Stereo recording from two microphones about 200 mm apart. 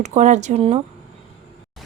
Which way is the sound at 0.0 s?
35° right (ahead or behind).